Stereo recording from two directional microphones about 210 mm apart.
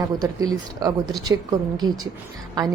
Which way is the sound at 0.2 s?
15° right (ahead or behind).